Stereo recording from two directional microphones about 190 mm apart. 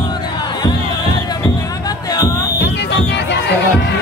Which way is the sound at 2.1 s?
20° left (ahead or behind).